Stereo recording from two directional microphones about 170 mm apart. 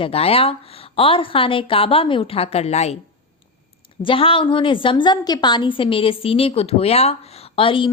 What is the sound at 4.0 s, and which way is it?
A woman's voice, 30° left (ahead or behind).